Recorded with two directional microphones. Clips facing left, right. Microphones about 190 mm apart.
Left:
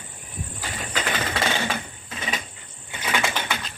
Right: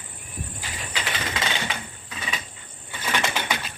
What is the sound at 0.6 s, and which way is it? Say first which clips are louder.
Typewriter: left 6 dB; 40° left (ahead or behind).